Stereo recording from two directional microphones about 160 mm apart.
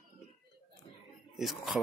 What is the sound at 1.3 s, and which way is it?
Speech, centre (ahead or behind).